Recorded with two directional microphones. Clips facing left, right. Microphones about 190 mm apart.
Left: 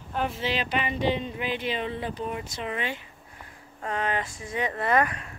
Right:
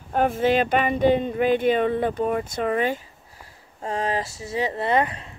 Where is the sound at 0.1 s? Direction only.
50° right (ahead or behind).